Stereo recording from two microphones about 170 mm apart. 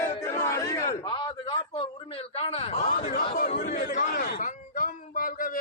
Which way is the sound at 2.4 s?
35° left (ahead or behind).